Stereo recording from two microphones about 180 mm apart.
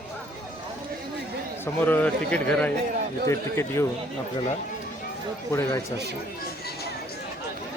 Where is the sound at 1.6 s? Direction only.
10° left (ahead or behind).